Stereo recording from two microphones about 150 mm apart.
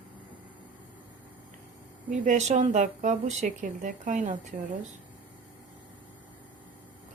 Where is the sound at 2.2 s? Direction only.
50° right (ahead or behind).